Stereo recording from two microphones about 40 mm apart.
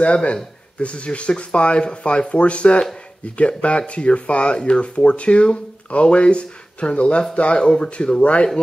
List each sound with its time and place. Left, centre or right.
0.0 s speech: left